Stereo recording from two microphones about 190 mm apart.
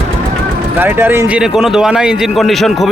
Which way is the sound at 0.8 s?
10° right (ahead or behind).